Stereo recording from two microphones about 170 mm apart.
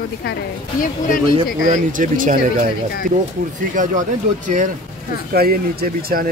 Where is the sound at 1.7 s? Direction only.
50° right (ahead or behind).